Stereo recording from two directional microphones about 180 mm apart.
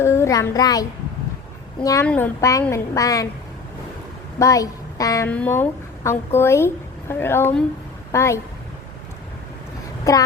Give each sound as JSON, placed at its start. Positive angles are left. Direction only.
{"t": 0.0, "sound": "a child's voice", "side_deg": 15}
{"t": 4.4, "sound": "a woman's voice", "side_deg": 20}
{"t": 10.0, "sound": "a child's voice", "side_deg": 20}